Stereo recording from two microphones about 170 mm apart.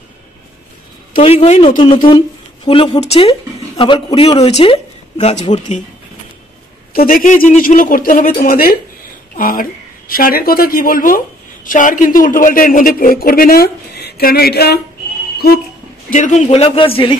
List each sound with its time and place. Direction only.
1.2 s speech: 40° left (ahead or behind)
6.9 s a woman's voice: 60° left (ahead or behind)
15.3 s a sound: 65° left (ahead or behind)
16.1 s speech: 45° left (ahead or behind)